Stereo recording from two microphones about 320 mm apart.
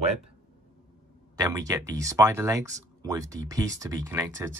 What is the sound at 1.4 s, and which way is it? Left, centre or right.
Speech, centre.